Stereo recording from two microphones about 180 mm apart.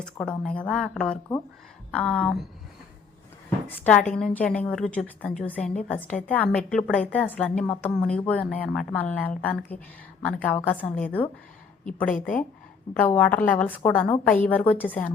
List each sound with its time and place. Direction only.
0.0 s speech: 5° left (ahead or behind)
3.7 s a woman's voice: 10° left (ahead or behind)
12.1 s a woman's voice: 45° left (ahead or behind)
12.9 s a woman's voice: 10° left (ahead or behind)